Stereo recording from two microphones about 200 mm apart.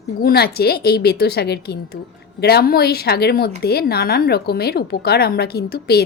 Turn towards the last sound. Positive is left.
turn(degrees=50)  # may be behind; listen again after turning